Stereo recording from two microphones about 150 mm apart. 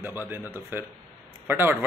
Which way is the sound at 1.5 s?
15° right (ahead or behind).